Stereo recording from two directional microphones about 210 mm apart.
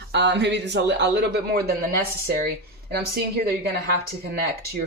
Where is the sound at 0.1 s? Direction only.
55° right (ahead or behind).